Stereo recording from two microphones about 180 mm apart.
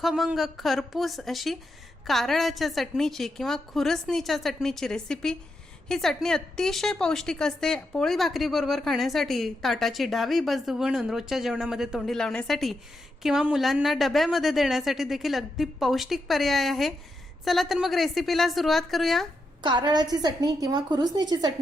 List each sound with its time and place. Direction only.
0.0 s a woman's voice: centre (ahead or behind)
19.6 s a woman's voice: 25° right (ahead or behind)